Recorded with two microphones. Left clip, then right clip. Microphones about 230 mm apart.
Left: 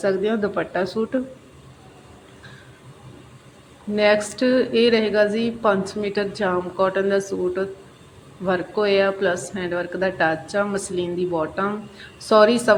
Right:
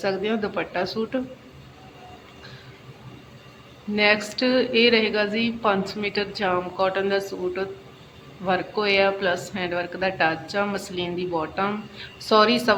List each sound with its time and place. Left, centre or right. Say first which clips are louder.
0.0 s a woman's voice: left 4 dB; centre
3.9 s a woman's voice: left 2 dB; centre